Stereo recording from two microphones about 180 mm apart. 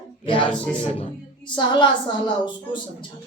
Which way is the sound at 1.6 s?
25° left (ahead or behind).